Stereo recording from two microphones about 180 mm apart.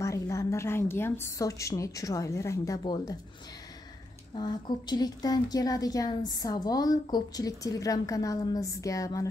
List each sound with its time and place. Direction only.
0.0 s a woman's voice: 15° left (ahead or behind)
4.4 s a woman's voice: 25° left (ahead or behind)